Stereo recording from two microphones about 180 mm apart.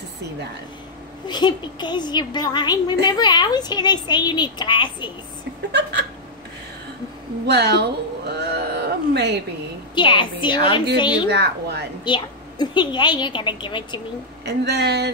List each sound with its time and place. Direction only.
1.2 s a woman's voice: 25° left (ahead or behind)
5.7 s speech: 70° right (ahead or behind)
7.4 s speech: 65° right (ahead or behind)
9.9 s a woman's voice: 25° left (ahead or behind)
11.2 s speech: 65° right (ahead or behind)
12.0 s a woman's voice: 25° left (ahead or behind)
14.4 s speech: 65° right (ahead or behind)